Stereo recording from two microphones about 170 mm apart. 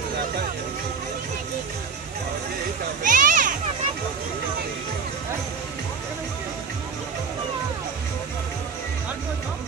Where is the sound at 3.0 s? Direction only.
50° right (ahead or behind).